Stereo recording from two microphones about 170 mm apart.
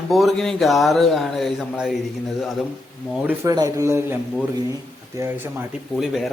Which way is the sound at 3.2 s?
10° right (ahead or behind).